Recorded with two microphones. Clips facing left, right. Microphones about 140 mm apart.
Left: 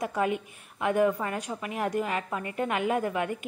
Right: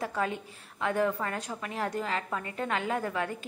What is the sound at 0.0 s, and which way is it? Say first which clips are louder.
A woman's voice: left 4 dB; 15° left (ahead or behind).